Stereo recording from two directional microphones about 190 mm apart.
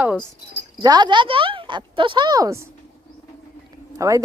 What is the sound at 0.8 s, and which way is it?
Speech, 20° right (ahead or behind).